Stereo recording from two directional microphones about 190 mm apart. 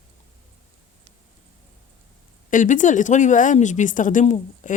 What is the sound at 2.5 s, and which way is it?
Speech, 45° left (ahead or behind).